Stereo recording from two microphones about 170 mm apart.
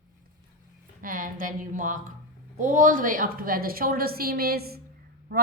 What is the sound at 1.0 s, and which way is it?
A woman's voice, 55° right (ahead or behind).